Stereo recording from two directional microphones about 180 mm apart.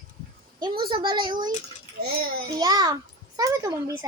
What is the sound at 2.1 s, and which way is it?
Speech, 60° right (ahead or behind).